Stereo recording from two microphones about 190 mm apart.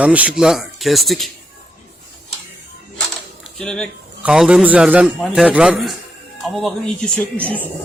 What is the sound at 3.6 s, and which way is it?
A man's voice, 5° left (ahead or behind).